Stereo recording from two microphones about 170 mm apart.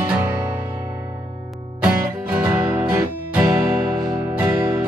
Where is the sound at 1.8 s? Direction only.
5° right (ahead or behind).